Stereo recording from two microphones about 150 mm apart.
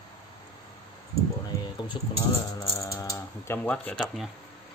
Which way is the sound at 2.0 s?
30° left (ahead or behind).